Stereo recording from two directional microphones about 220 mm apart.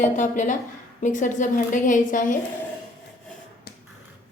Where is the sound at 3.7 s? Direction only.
45° left (ahead or behind).